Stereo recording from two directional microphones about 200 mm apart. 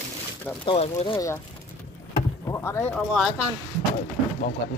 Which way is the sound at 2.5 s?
15° left (ahead or behind).